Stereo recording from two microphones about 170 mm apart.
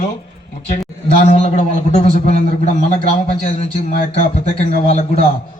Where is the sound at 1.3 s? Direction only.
40° left (ahead or behind).